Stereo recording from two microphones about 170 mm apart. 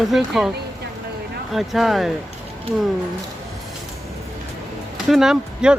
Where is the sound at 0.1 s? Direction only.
Centre (ahead or behind).